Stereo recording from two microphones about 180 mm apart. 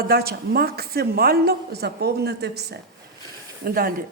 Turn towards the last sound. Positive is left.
turn(degrees=-55)  # may be behind; listen again after turning